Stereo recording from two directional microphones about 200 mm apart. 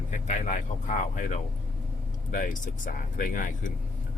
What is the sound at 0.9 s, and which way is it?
Speech, 40° left (ahead or behind).